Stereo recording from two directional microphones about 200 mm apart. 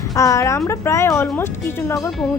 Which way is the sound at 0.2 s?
15° left (ahead or behind).